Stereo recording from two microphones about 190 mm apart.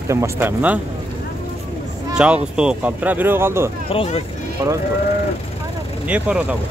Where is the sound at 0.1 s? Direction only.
15° right (ahead or behind).